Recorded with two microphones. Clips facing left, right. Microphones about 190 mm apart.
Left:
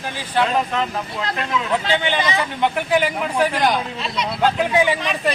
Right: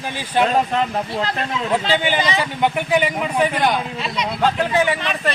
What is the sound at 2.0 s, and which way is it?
Speech, 15° right (ahead or behind).